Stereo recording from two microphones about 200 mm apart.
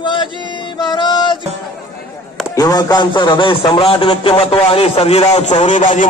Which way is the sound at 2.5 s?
20° left (ahead or behind).